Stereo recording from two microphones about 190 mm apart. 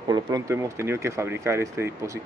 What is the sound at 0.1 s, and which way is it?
Speech, 15° right (ahead or behind).